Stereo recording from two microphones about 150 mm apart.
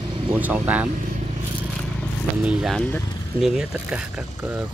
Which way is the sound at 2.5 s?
5° right (ahead or behind).